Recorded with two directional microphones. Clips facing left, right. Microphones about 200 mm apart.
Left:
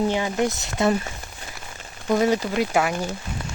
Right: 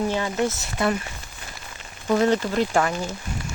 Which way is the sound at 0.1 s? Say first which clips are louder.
Left 1 dB; 15° left (ahead or behind).